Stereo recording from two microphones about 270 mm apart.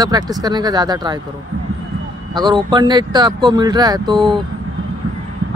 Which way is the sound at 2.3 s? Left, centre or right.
Centre.